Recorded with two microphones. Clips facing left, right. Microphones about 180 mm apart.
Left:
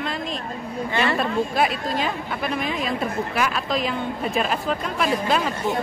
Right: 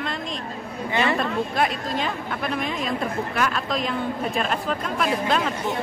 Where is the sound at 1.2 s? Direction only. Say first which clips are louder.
Left 2 dB; 5° left (ahead or behind).